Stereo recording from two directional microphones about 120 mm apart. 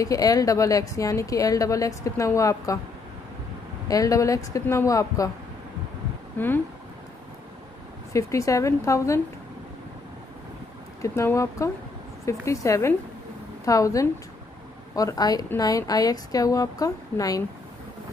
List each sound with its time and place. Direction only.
0.0 s a woman's voice: 30° left (ahead or behind)
3.9 s a woman's voice: 30° left (ahead or behind)
6.3 s speech: 15° left (ahead or behind)
8.1 s a woman's voice: 25° left (ahead or behind)
11.0 s a woman's voice: 25° left (ahead or behind)